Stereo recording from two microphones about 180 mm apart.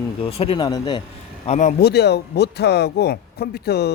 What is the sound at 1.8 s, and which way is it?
Speech, 65° left (ahead or behind).